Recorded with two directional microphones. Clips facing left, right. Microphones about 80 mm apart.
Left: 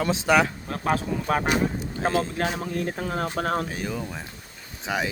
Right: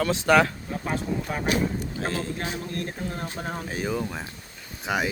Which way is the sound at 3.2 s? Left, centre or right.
Left.